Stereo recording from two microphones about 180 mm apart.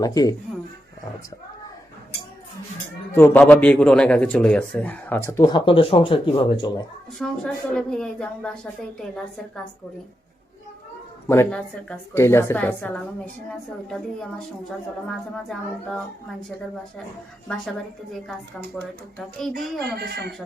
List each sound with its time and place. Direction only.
0.0 s speech: 20° left (ahead or behind)
3.2 s a man's voice: 10° left (ahead or behind); by 6.8 s 25° left (ahead or behind)
7.2 s a woman's voice: 5° left (ahead or behind)
11.3 s a man's voice: 10° left (ahead or behind)
19.4 s a woman's voice: centre (ahead or behind)
19.8 s speech: 65° right (ahead or behind)